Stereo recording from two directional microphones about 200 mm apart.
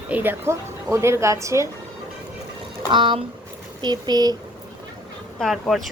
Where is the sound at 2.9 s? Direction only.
25° right (ahead or behind).